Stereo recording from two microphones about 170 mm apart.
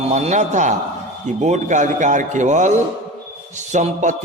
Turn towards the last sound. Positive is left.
turn(degrees=-45)  # may be behind; listen again after turning